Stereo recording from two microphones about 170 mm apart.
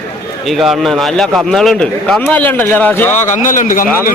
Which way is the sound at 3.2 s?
45° left (ahead or behind).